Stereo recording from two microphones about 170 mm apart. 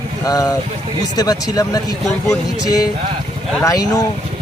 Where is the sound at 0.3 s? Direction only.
20° left (ahead or behind).